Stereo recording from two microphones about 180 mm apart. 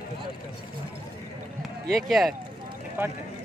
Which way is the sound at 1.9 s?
Centre (ahead or behind).